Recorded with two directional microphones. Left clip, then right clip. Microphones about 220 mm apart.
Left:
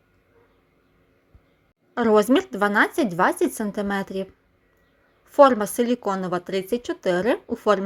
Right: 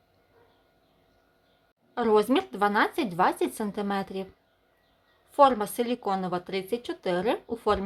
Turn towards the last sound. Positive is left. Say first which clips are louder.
# left 6 dB
turn(degrees=15)  # may be behind; listen again after turning